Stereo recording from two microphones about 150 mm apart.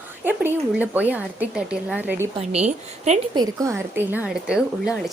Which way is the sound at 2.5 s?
50° right (ahead or behind).